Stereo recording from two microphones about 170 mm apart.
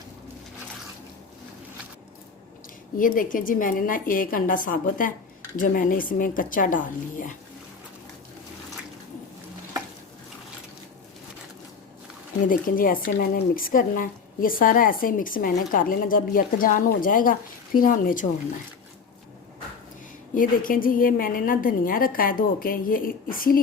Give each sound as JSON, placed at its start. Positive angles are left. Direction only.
{"t": 3.0, "sound": "a woman's voice", "side_deg": 55}
{"t": 12.5, "sound": "a woman's voice", "side_deg": 55}
{"t": 20.3, "sound": "a woman's voice", "side_deg": 55}